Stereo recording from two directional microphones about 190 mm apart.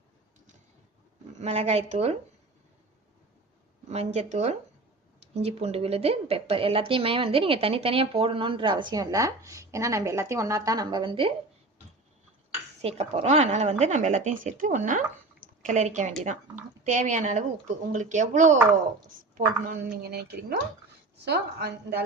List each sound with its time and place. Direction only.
1.4 s speech: 35° right (ahead or behind)
3.8 s a woman's voice: 35° right (ahead or behind)
13.0 s speech: 35° right (ahead or behind)
19.6 s a woman's voice: 50° right (ahead or behind)